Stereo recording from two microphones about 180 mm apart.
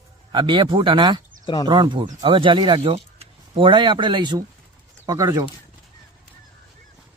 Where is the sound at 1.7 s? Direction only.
25° right (ahead or behind).